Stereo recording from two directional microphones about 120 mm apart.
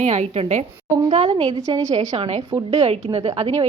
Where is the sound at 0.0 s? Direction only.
75° right (ahead or behind).